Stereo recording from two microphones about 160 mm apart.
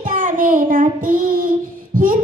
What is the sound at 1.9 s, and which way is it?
Heart murmur, 60° right (ahead or behind).